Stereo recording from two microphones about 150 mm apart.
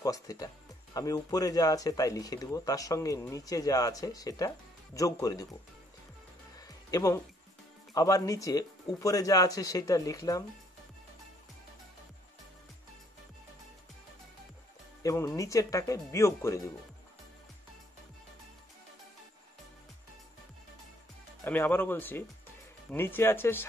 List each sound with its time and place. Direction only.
0.0 s speech: 25° left (ahead or behind)
6.9 s speech: 20° left (ahead or behind)
15.0 s speech: 20° left (ahead or behind)
21.5 s speech: 10° left (ahead or behind)